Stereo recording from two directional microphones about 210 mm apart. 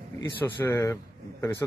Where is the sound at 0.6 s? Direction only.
15° left (ahead or behind).